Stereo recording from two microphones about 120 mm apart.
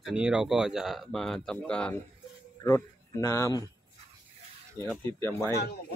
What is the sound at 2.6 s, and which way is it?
Speech, 30° left (ahead or behind).